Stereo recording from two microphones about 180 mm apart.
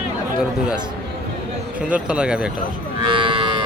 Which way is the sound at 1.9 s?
5° right (ahead or behind).